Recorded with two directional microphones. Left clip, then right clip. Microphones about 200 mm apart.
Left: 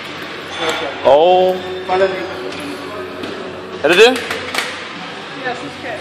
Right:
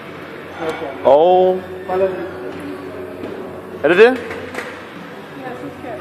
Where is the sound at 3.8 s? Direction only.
5° left (ahead or behind).